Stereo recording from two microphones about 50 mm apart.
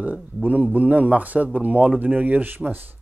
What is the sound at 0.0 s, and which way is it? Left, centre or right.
Speech, right.